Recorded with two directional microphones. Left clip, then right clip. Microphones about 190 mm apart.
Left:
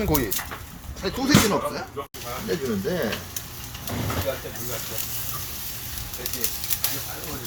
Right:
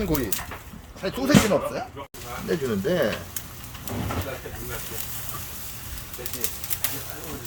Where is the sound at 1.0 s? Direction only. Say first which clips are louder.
Even; 40° right (ahead or behind).